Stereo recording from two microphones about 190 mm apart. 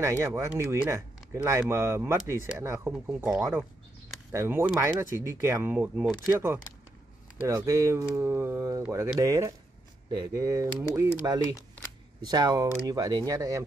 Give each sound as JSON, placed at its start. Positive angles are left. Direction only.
{"t": 0.0, "sound": "speech", "side_deg": -15}